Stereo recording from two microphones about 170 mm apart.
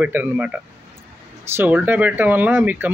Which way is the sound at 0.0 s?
10° right (ahead or behind).